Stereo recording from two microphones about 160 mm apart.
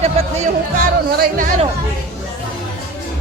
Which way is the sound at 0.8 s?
60° right (ahead or behind).